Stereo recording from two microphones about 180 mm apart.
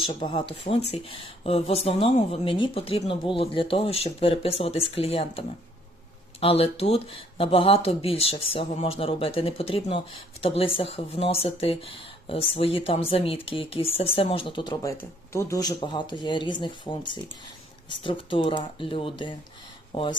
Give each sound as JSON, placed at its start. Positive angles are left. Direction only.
{"t": 0.0, "sound": "speech", "side_deg": 30}